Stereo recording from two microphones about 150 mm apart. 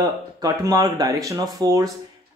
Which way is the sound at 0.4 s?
25° right (ahead or behind).